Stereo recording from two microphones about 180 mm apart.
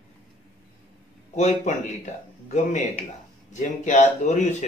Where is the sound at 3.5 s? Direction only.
40° left (ahead or behind).